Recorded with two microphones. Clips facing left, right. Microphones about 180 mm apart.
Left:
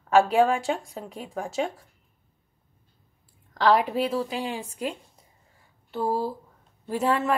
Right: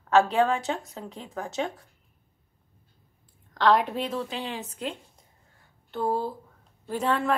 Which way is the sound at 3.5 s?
5° left (ahead or behind).